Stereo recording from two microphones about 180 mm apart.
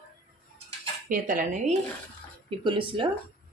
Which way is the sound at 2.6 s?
25° right (ahead or behind).